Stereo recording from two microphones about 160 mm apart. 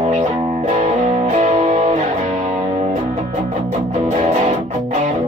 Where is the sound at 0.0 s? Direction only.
40° right (ahead or behind).